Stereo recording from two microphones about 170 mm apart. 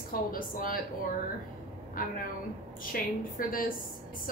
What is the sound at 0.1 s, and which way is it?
Speech, 55° left (ahead or behind).